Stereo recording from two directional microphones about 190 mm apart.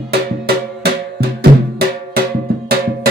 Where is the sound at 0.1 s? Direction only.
55° right (ahead or behind).